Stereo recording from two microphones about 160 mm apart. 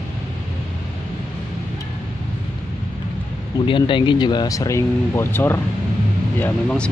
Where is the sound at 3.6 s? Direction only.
30° left (ahead or behind).